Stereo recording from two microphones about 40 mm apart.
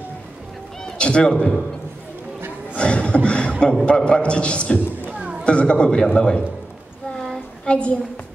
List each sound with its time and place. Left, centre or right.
0.9 s a man's voice: left
2.7 s a man's voice: left
7.6 s a woman's voice: left